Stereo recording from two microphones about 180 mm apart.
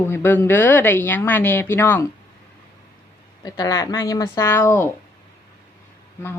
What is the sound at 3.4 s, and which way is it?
Speech, 20° left (ahead or behind).